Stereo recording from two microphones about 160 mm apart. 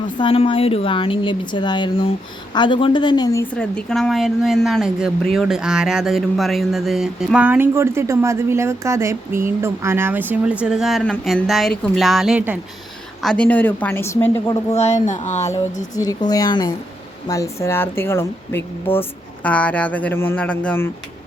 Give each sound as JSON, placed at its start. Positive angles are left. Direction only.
{"t": 0.2, "sound": "speech", "side_deg": 35}
{"t": 3.4, "sound": "speech", "side_deg": 5}
{"t": 13.2, "sound": "a woman's voice", "side_deg": 5}
{"t": 14.7, "sound": "speech", "side_deg": 45}
{"t": 16.0, "sound": "a woman's voice", "side_deg": 25}